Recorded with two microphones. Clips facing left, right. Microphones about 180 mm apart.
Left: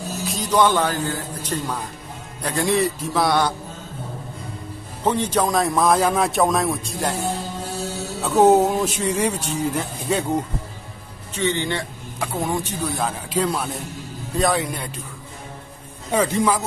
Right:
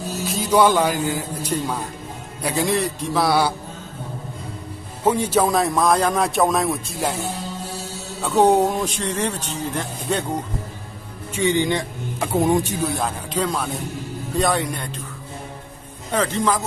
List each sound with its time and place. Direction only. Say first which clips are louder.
0.3 s speech: right 2 dB; 5° right (ahead or behind)
5.0 s speech: right 2 dB; 10° right (ahead or behind)
8.2 s speech: left 1 dB; centre (ahead or behind)
11.3 s speech: right 3 dB; 15° right (ahead or behind)
12.9 s speech: even; 5° left (ahead or behind)
16.1 s speech: left 1 dB; 10° left (ahead or behind)